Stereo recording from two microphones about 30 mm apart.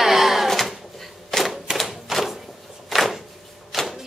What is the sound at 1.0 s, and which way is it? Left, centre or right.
Typewriter, centre.